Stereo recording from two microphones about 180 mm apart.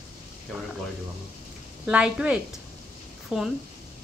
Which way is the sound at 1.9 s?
5° right (ahead or behind).